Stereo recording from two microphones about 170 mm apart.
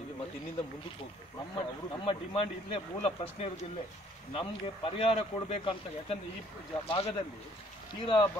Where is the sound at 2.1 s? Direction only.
35° left (ahead or behind).